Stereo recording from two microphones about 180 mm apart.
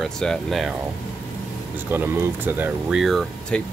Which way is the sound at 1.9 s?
10° right (ahead or behind).